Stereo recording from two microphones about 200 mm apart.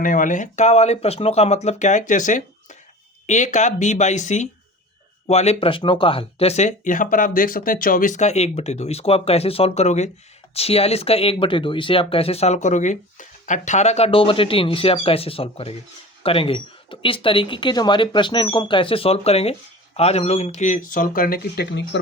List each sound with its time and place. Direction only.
0.0 s speech: 40° left (ahead or behind); by 22.0 s 55° left (ahead or behind)